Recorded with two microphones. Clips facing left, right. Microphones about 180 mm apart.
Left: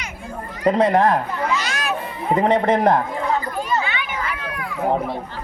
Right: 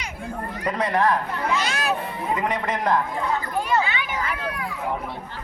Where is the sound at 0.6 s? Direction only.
25° left (ahead or behind).